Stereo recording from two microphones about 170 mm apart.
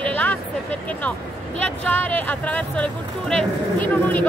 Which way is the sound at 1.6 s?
10° left (ahead or behind).